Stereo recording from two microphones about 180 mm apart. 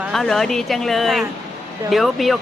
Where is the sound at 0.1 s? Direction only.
Centre (ahead or behind).